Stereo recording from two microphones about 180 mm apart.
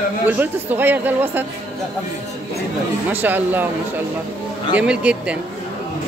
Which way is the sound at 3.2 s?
10° right (ahead or behind).